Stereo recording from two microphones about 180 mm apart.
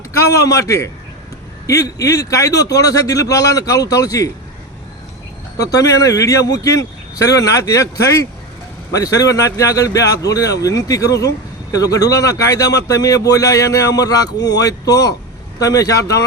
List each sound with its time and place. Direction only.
0.1 s a man's voice: 15° left (ahead or behind)
5.7 s speech: 20° left (ahead or behind)